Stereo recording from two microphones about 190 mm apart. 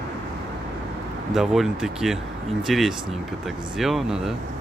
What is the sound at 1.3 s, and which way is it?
Speech, centre (ahead or behind).